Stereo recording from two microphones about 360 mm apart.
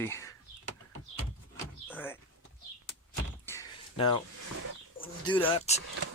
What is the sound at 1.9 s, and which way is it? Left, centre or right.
Speech, centre.